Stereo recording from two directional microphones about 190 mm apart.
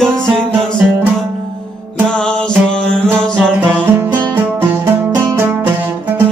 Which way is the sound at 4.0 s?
15° right (ahead or behind).